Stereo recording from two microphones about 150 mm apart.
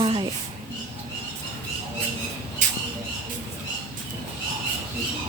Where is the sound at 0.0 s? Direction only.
35° right (ahead or behind).